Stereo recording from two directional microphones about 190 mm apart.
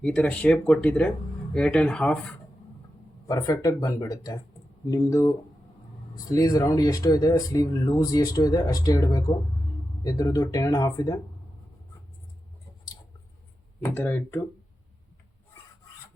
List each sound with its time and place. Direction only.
0.0 s speech: 5° left (ahead or behind)
3.2 s speech: 20° left (ahead or behind)
6.3 s speech: 20° left (ahead or behind)
13.8 s speech: 10° left (ahead or behind)